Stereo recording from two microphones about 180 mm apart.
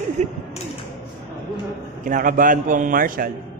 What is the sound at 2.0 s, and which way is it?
A man's voice, 50° right (ahead or behind).